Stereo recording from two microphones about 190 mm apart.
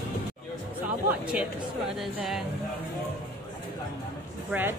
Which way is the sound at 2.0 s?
Centre (ahead or behind).